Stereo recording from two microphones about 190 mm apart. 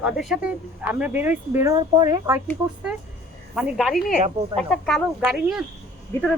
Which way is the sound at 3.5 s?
5° right (ahead or behind).